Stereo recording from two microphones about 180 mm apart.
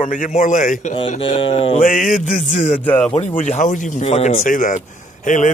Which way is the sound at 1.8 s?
50° left (ahead or behind).